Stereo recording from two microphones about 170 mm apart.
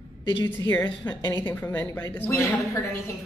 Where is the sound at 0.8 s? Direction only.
25° left (ahead or behind).